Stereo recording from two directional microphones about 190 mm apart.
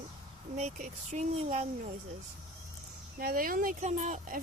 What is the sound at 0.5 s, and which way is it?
Speech, 40° right (ahead or behind).